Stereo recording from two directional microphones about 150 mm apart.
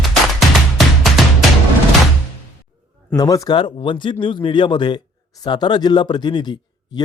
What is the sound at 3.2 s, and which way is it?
Speech, 25° left (ahead or behind).